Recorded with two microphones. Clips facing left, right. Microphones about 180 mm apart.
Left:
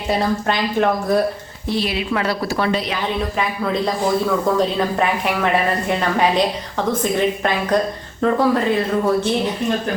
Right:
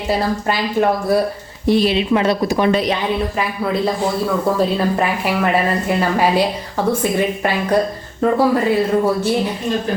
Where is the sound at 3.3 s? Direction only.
5° right (ahead or behind).